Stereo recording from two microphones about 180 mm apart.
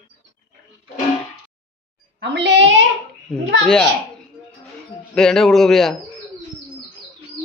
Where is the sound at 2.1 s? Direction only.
75° right (ahead or behind).